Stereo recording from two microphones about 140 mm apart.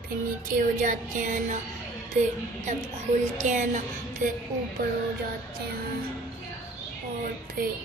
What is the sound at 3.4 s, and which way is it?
Speech, 60° right (ahead or behind).